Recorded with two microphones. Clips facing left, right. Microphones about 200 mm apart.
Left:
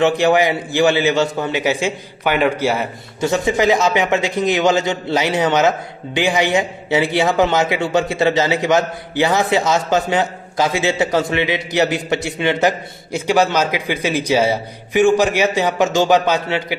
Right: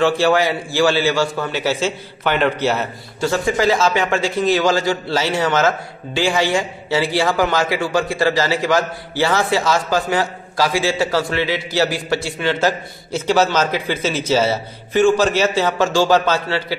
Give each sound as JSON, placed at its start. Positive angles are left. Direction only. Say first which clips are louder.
{"t": 0.0, "sound": "a man's voice", "louder": "left 1 dB", "side_deg": 20}